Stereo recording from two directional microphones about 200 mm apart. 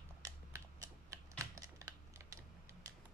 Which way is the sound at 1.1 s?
15° right (ahead or behind).